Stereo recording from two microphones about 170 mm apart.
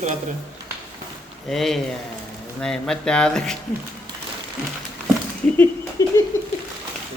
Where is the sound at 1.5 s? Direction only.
Centre (ahead or behind).